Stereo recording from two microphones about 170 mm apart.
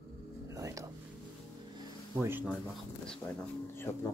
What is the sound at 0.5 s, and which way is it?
Whispering, 20° right (ahead or behind).